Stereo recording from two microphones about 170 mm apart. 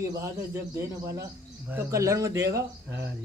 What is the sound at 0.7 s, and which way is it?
Speech, 20° right (ahead or behind).